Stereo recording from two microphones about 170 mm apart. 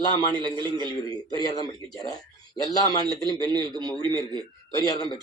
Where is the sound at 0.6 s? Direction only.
25° right (ahead or behind).